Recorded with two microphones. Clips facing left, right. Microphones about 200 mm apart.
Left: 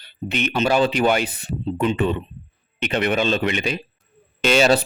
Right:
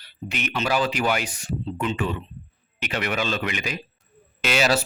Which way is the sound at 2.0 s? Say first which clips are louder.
Left 6 dB; 35° left (ahead or behind).